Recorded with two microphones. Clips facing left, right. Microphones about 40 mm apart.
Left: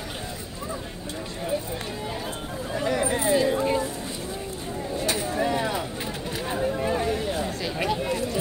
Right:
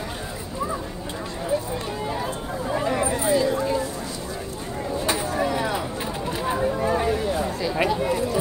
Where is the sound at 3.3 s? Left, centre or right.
Left.